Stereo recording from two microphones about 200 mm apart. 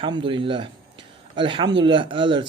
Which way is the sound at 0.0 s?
25° right (ahead or behind).